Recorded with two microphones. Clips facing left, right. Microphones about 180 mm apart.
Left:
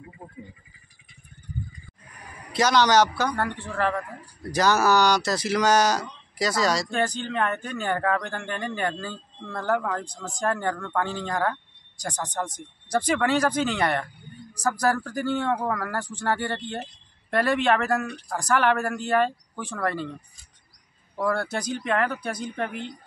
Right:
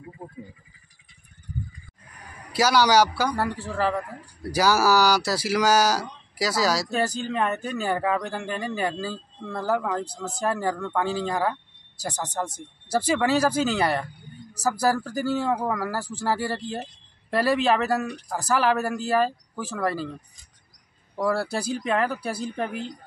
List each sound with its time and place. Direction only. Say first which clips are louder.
2.5 s speech: even; 5° right (ahead or behind)
21.2 s speech: right 1 dB; 5° right (ahead or behind)
21.5 s speech: right 1 dB; 30° right (ahead or behind)
21.8 s speech: even; 5° right (ahead or behind)